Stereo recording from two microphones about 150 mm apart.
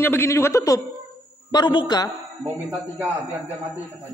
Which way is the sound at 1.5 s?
30° left (ahead or behind).